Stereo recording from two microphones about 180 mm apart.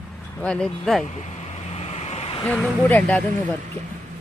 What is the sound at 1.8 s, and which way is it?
Vehicle, 35° left (ahead or behind).